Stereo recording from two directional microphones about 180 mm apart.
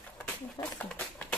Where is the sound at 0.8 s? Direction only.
5° left (ahead or behind).